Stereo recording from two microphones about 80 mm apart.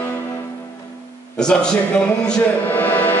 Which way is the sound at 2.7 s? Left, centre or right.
Left.